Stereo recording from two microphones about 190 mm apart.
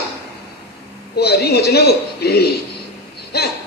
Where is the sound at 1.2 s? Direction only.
55° left (ahead or behind).